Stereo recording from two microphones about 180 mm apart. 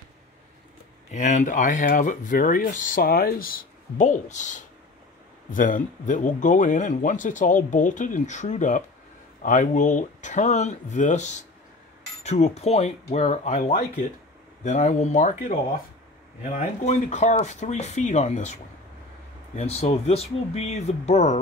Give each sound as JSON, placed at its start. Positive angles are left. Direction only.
{"t": 1.1, "sound": "speech", "side_deg": 45}